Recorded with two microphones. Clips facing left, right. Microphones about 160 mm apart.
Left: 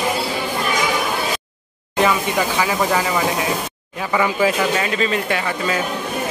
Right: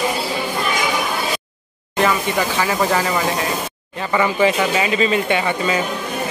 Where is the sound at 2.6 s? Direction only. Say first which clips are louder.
Right 1 dB; 5° left (ahead or behind).